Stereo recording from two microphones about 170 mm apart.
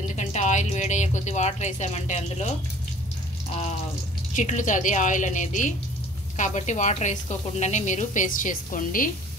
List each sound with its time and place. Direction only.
0.1 s speech: 45° left (ahead or behind)
4.4 s a woman's voice: 45° left (ahead or behind)